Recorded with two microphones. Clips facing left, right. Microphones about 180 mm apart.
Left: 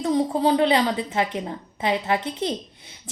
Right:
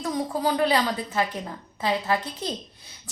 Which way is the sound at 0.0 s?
25° left (ahead or behind).